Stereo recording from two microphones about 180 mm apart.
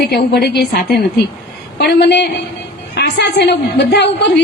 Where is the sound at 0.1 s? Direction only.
65° left (ahead or behind).